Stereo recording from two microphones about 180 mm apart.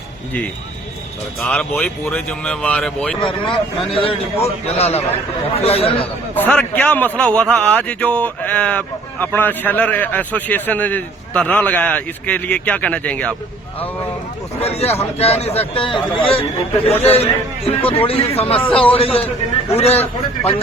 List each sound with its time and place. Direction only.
1.4 s speech: 5° left (ahead or behind)
3.2 s a man's voice: 30° left (ahead or behind)
6.3 s a man's voice: 10° left (ahead or behind)
14.6 s a man's voice: 35° left (ahead or behind)